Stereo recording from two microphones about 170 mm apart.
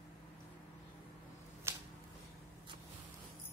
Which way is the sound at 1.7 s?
15° right (ahead or behind).